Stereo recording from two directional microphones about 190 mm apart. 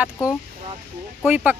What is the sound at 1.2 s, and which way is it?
Speech, 10° right (ahead or behind).